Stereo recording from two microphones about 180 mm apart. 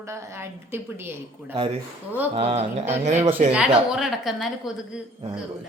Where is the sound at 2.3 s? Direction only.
35° right (ahead or behind).